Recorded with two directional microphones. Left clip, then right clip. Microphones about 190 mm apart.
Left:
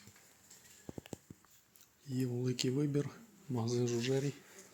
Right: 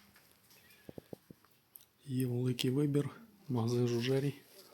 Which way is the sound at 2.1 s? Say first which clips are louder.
Right 1 dB; 25° right (ahead or behind).